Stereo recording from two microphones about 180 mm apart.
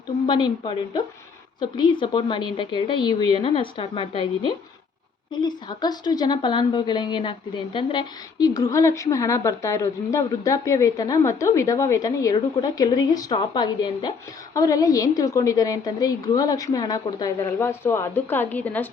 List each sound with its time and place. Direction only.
0.3 s a woman's voice: 25° left (ahead or behind); by 18.9 s 10° left (ahead or behind)